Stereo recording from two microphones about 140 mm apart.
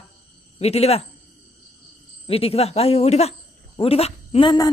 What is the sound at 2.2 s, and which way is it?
A woman's voice, 45° left (ahead or behind).